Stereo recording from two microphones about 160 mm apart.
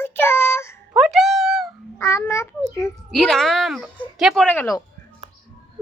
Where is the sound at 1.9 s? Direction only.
15° left (ahead or behind).